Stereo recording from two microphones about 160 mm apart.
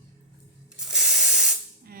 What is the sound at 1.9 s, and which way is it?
Music, 70° right (ahead or behind).